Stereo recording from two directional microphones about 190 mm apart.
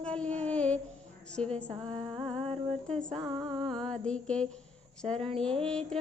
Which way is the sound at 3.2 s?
25° right (ahead or behind).